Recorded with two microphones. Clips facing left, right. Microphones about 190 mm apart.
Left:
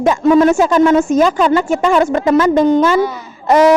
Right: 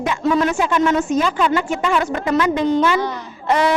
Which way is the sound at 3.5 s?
40° left (ahead or behind).